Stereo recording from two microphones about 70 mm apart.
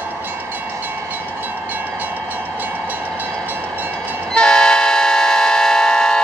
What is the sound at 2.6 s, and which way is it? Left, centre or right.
Train, right.